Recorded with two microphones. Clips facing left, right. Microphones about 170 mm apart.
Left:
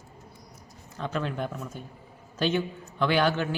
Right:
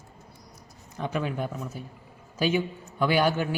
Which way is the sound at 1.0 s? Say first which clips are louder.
Right 1 dB; 10° right (ahead or behind).